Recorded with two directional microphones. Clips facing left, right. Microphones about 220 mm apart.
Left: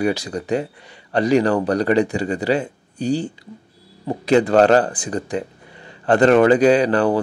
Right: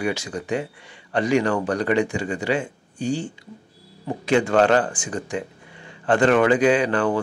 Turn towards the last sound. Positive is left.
turn(degrees=35)  # may be behind; listen again after turning